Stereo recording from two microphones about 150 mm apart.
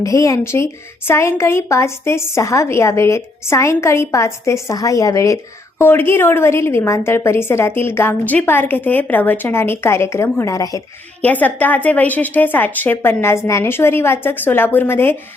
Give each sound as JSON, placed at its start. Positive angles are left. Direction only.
{"t": 0.0, "sound": "a woman's voice", "side_deg": 20}
{"t": 11.2, "sound": "a woman's voice", "side_deg": 10}